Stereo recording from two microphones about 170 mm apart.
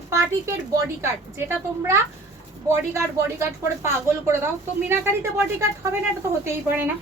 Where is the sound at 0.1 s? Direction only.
15° right (ahead or behind).